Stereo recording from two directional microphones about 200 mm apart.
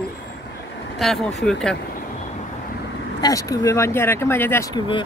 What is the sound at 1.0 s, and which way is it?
Speech, centre (ahead or behind).